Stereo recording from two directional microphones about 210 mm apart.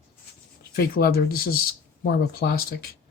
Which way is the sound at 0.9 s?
45° left (ahead or behind).